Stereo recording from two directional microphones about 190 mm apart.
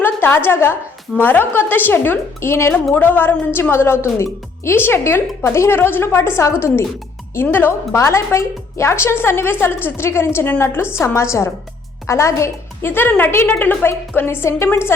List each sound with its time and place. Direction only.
0.0 s a woman's voice: 10° left (ahead or behind)